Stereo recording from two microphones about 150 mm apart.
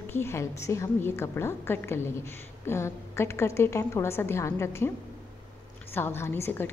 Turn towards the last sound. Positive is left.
turn(degrees=15)  # may be behind; listen again after turning